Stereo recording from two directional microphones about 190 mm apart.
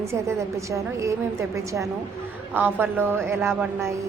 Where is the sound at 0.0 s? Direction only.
15° right (ahead or behind).